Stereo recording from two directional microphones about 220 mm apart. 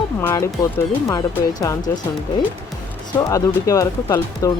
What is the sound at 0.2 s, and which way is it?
Speech, 10° left (ahead or behind).